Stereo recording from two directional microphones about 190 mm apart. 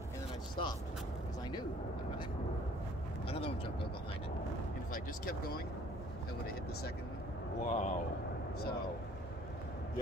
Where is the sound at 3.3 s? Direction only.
30° left (ahead or behind).